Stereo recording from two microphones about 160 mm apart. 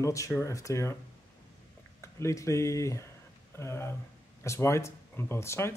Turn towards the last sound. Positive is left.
turn(degrees=15)  # may be behind; listen again after turning